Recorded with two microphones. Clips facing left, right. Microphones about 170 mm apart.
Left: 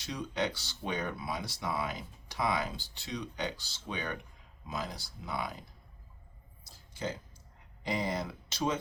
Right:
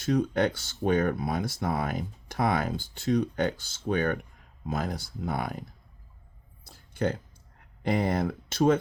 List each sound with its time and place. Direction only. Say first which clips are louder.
0.0 s speech: right 10 dB; 50° right (ahead or behind)
6.7 s a sound: right 9 dB; 60° right (ahead or behind)
7.8 s speech: right 7 dB; 55° right (ahead or behind)